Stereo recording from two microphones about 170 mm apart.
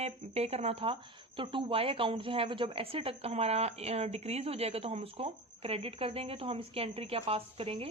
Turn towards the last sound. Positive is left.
turn(degrees=-35)  # may be behind; listen again after turning